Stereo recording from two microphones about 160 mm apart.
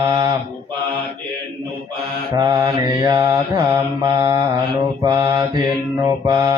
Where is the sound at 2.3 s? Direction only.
25° right (ahead or behind).